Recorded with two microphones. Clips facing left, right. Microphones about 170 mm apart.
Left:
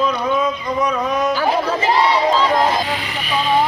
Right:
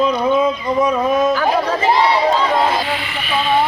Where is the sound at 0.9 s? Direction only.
5° right (ahead or behind).